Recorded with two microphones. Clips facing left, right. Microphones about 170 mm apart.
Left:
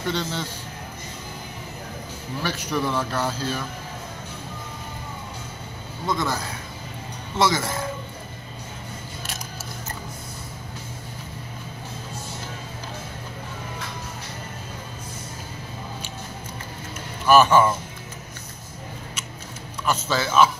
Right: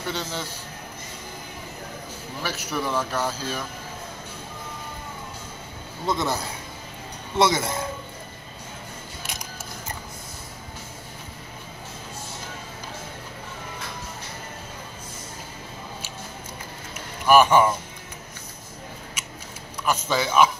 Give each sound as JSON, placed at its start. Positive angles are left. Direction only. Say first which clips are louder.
{"t": 0.1, "sound": "a man's voice", "louder": "left 3 dB", "side_deg": -10}
{"t": 2.4, "sound": "a man's voice", "louder": "left 3 dB", "side_deg": -10}
{"t": 6.0, "sound": "speech", "louder": "even", "side_deg": -20}
{"t": 17.3, "sound": "a man's voice", "louder": "even", "side_deg": -15}
{"t": 19.8, "sound": "a man's voice", "louder": "even", "side_deg": -15}